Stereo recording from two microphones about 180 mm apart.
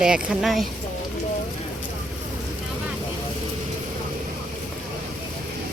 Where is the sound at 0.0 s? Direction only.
5° right (ahead or behind).